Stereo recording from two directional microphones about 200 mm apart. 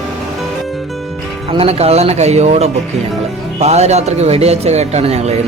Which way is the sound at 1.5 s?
30° right (ahead or behind).